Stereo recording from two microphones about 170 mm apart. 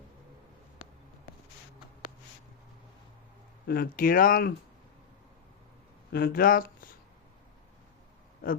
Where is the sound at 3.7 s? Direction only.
60° left (ahead or behind).